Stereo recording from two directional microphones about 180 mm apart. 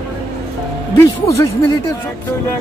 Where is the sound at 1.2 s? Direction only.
15° left (ahead or behind).